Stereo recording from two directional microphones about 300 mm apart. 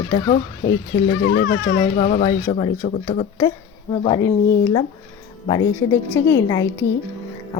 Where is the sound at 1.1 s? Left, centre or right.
Left.